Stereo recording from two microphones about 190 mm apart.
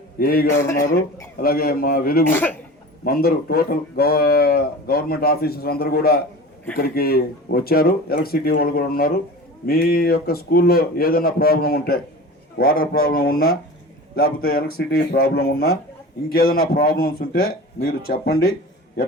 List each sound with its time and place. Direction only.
0.2 s speech: 50° left (ahead or behind)
2.2 s speech: 10° left (ahead or behind)
3.0 s speech: 55° left (ahead or behind)